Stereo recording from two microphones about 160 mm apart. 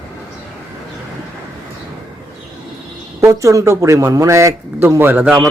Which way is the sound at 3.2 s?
20° right (ahead or behind).